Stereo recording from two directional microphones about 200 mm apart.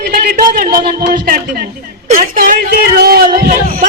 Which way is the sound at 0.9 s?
50° right (ahead or behind).